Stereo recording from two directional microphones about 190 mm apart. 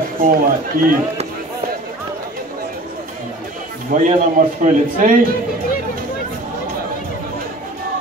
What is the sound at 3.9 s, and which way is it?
Speech, 45° right (ahead or behind).